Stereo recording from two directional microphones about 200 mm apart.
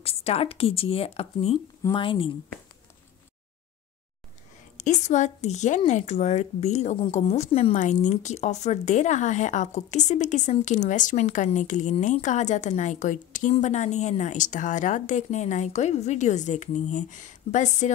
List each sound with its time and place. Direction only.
0.0 s speech: 30° left (ahead or behind)
4.7 s speech: 35° left (ahead or behind)